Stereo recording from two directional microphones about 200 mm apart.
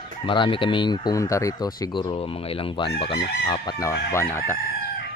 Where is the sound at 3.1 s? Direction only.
55° left (ahead or behind).